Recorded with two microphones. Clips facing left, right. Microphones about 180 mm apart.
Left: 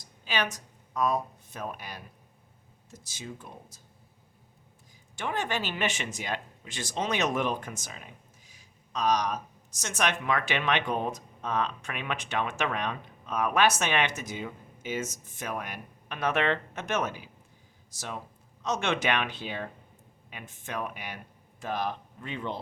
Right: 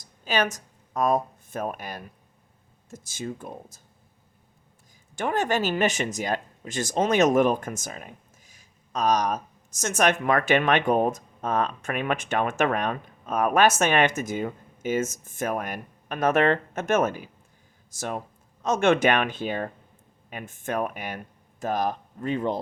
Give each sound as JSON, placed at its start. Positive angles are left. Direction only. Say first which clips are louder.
{"t": 0.3, "sound": "speech", "louder": "right 6 dB", "side_deg": -45}
{"t": 5.1, "sound": "speech", "louder": "right 7 dB", "side_deg": -45}